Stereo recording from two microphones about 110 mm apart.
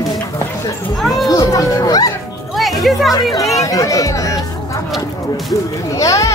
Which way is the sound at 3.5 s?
30° left (ahead or behind).